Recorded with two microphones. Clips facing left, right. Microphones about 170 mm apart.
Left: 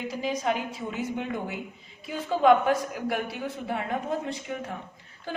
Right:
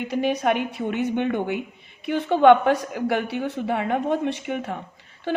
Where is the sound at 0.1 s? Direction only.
65° right (ahead or behind).